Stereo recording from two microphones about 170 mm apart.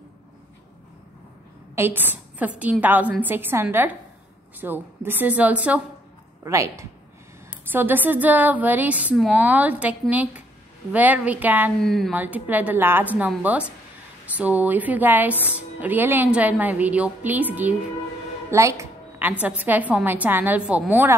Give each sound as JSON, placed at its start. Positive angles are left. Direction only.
{"t": 1.8, "sound": "a woman's voice", "side_deg": -10}
{"t": 11.8, "sound": "speech", "side_deg": 0}
{"t": 12.2, "sound": "a woman's voice", "side_deg": -10}